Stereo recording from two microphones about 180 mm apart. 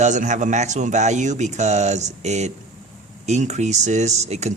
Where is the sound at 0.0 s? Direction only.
40° right (ahead or behind).